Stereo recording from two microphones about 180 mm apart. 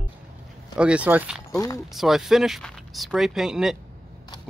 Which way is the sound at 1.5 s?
20° left (ahead or behind).